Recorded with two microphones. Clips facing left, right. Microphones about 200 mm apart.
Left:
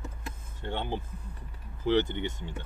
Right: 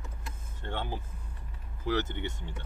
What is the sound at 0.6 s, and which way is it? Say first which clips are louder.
Speech: left 3 dB; 20° left (ahead or behind).